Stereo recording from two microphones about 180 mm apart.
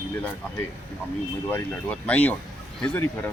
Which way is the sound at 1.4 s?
10° left (ahead or behind).